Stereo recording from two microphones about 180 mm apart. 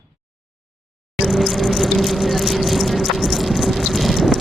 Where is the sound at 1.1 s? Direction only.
Centre (ahead or behind).